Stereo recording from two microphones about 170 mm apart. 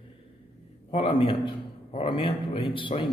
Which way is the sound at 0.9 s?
30° left (ahead or behind).